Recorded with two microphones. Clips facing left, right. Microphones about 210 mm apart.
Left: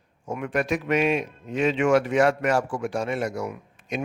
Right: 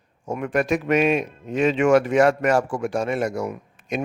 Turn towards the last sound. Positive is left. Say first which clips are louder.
# right 3 dB
turn(degrees=-45)  # may be behind; listen again after turning